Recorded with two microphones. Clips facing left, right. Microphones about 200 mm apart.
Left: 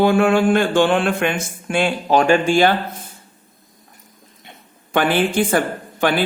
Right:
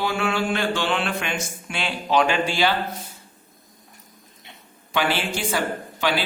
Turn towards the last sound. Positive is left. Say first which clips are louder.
# left 6 dB
turn(degrees=50)  # may be behind; listen again after turning